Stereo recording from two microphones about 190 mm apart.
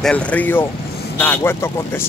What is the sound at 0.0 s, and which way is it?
Speech, 5° left (ahead or behind).